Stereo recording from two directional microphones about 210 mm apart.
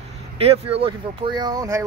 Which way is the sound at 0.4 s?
30° right (ahead or behind).